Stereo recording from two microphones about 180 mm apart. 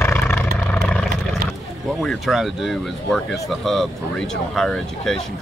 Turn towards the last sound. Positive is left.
turn(degrees=5)  # may be behind; listen again after turning